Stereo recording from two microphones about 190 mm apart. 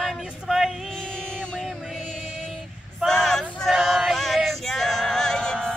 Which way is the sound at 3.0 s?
Centre (ahead or behind).